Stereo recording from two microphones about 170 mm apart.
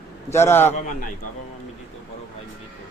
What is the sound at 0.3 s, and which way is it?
Speech, 15° left (ahead or behind).